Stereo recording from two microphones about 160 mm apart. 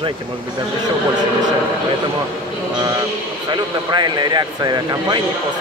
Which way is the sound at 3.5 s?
30° right (ahead or behind).